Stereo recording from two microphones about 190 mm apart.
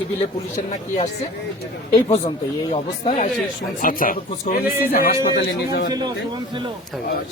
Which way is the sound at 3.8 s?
45° left (ahead or behind).